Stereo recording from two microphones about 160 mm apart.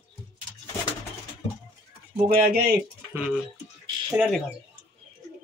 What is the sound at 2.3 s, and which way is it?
Speech, 75° right (ahead or behind).